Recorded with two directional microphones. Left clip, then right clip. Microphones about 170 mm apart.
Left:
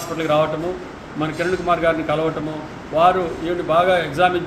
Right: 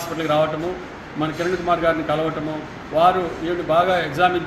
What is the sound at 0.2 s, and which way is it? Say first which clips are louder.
A man's voice: left 1 dB; 5° left (ahead or behind).